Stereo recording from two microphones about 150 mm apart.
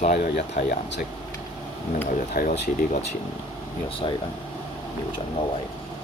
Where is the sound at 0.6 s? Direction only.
90° left.